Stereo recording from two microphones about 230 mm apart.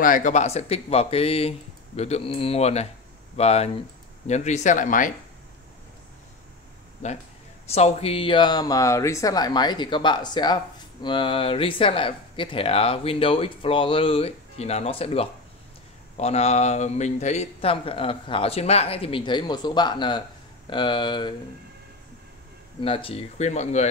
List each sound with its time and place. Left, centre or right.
0.0 s speech: left
7.0 s speech: left
22.8 s speech: left